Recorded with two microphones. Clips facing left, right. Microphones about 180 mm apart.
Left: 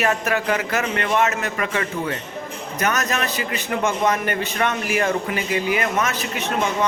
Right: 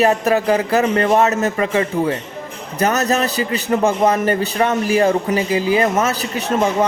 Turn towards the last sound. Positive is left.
turn(degrees=-35)  # may be behind; listen again after turning